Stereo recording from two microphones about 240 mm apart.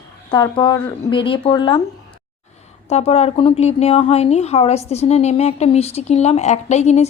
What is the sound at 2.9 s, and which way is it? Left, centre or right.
A woman's voice, left.